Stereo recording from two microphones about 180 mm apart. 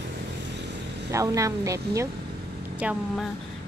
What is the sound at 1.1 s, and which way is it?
Speech, 15° right (ahead or behind).